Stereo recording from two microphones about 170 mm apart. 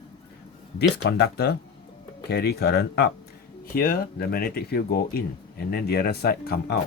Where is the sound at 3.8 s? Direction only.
60° left (ahead or behind).